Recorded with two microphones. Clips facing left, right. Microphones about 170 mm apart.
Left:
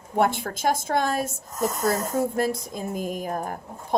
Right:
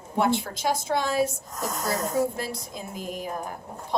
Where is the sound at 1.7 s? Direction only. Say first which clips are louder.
Even; centre (ahead or behind).